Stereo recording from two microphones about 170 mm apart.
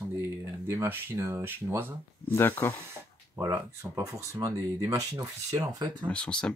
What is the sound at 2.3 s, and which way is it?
Speech, 10° left (ahead or behind).